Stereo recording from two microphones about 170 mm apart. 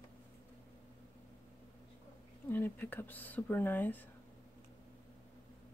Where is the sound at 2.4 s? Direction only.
10° left (ahead or behind).